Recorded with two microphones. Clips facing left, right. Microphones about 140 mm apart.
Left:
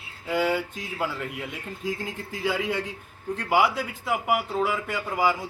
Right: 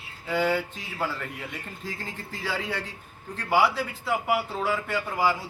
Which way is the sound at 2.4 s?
15° left (ahead or behind).